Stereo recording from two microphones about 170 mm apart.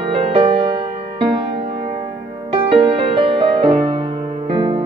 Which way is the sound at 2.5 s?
30° right (ahead or behind).